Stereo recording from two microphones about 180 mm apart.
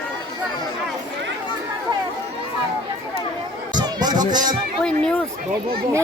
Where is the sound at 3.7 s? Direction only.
20° right (ahead or behind).